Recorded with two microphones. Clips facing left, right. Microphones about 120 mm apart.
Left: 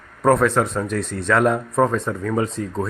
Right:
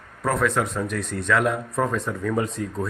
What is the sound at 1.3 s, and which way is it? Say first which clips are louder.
Speech: left 4 dB; 40° left (ahead or behind).